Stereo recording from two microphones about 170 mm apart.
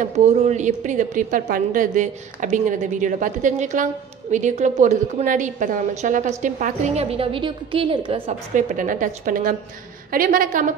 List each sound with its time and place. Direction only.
0.0 s a woman's voice: 40° right (ahead or behind)
8.5 s a woman's voice: 50° right (ahead or behind)